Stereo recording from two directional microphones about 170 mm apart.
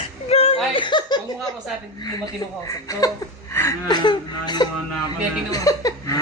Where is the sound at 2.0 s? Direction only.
20° left (ahead or behind).